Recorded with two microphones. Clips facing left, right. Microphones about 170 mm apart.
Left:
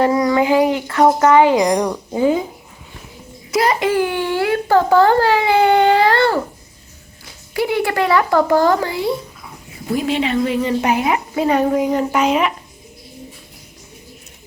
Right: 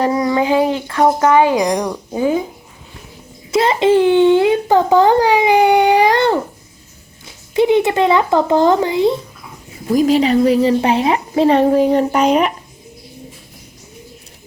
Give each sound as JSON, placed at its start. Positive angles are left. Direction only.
{"t": 0.0, "sound": "a sound", "side_deg": -20}
{"t": 0.9, "sound": "a child's voice", "side_deg": -15}
{"t": 1.4, "sound": "speech", "side_deg": 15}
{"t": 3.5, "sound": "a child's voice", "side_deg": -25}
{"t": 7.5, "sound": "speech", "side_deg": -20}
{"t": 9.9, "sound": "a woman's voice", "side_deg": -40}